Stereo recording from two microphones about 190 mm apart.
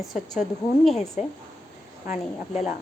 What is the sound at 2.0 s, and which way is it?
Speech, 40° left (ahead or behind).